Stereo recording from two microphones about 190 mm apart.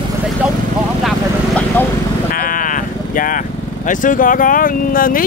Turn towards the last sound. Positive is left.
turn(degrees=50)  # may be behind; listen again after turning